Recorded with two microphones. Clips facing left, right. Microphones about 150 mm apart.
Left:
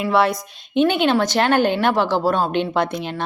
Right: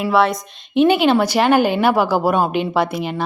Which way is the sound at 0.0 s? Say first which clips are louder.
Right 2 dB; centre (ahead or behind).